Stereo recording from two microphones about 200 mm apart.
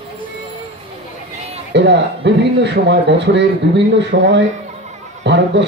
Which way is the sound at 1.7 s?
60° right (ahead or behind).